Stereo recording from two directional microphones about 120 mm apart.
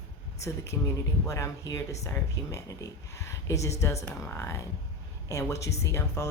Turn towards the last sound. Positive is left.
turn(degrees=20)  # may be behind; listen again after turning